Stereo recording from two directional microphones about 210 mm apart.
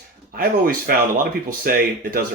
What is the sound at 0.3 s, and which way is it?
Speech, 45° right (ahead or behind).